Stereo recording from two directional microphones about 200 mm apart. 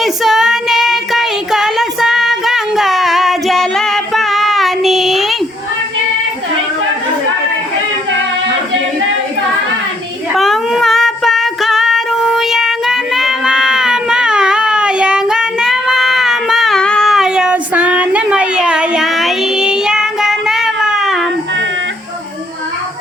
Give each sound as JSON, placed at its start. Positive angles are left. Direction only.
{"t": 0.0, "sound": "child singing", "side_deg": 0}
{"t": 10.3, "sound": "child singing", "side_deg": 0}